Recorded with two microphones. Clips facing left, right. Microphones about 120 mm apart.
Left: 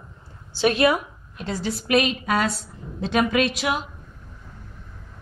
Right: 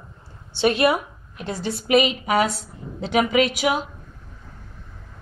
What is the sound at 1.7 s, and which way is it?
Speech, 25° right (ahead or behind).